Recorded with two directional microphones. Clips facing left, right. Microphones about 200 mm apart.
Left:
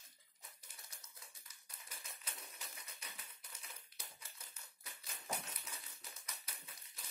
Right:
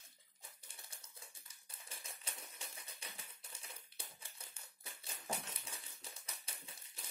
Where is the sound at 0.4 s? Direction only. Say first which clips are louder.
Right 1 dB; 30° right (ahead or behind).